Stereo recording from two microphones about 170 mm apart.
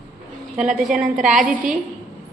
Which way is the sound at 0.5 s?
5° right (ahead or behind).